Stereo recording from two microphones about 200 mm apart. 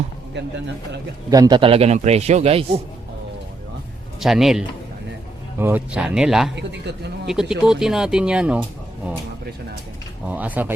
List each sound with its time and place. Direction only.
1.3 s a man's voice: 20° right (ahead or behind)
4.2 s speech: centre (ahead or behind)
6.6 s speech: 60° right (ahead or behind)
7.3 s speech: centre (ahead or behind)
10.2 s speech: 10° right (ahead or behind)